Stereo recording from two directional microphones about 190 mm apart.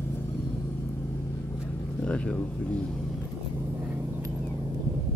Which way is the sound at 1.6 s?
5° left (ahead or behind).